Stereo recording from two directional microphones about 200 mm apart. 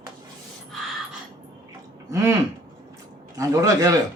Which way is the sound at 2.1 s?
15° right (ahead or behind).